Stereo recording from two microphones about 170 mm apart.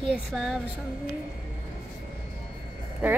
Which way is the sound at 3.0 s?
10° right (ahead or behind).